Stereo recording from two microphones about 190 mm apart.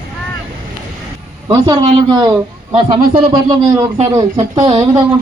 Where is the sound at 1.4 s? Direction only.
20° right (ahead or behind).